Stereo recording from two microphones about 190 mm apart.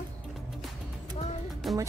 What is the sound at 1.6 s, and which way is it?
Speech, centre (ahead or behind).